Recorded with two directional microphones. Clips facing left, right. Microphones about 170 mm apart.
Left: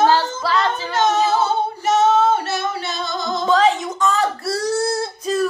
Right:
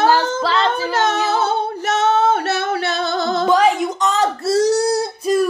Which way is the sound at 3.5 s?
10° right (ahead or behind).